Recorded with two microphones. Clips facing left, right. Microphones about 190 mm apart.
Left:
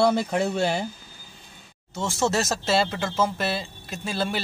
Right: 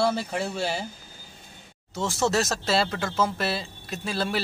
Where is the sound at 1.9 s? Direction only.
Centre (ahead or behind).